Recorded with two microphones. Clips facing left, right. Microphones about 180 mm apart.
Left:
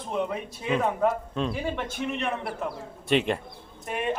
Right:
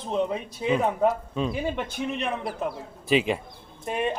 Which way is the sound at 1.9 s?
15° right (ahead or behind).